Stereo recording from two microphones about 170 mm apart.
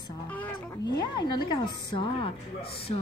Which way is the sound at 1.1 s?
25° left (ahead or behind).